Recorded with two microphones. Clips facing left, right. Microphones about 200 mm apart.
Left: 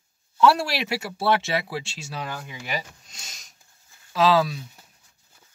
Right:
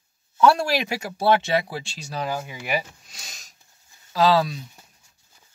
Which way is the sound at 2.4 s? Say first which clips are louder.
Right 5 dB; 10° right (ahead or behind).